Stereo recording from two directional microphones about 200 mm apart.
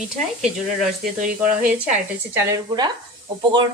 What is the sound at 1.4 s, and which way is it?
Speech, 5° right (ahead or behind).